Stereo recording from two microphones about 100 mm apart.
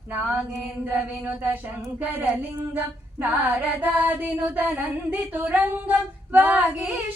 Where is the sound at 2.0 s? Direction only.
20° right (ahead or behind).